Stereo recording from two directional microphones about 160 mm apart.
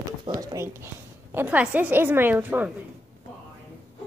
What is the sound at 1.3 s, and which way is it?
A woman's voice, 10° right (ahead or behind).